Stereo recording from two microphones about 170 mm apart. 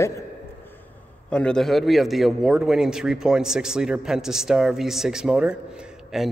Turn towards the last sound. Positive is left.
turn(degrees=0)  # may be behind; listen again after turning